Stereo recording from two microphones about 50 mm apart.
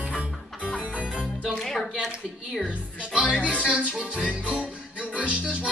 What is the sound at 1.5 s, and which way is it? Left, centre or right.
Speech, centre.